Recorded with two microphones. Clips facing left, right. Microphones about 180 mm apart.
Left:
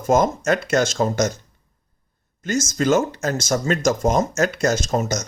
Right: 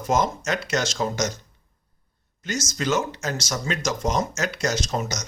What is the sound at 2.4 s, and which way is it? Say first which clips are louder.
Speech: left 7 dB; 50° left (ahead or behind).